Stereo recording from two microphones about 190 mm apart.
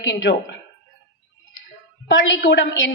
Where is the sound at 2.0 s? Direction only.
75° left (ahead or behind).